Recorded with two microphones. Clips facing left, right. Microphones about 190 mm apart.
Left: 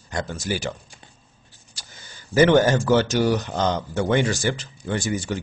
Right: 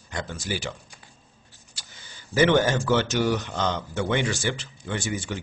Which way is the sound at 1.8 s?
40° left (ahead or behind).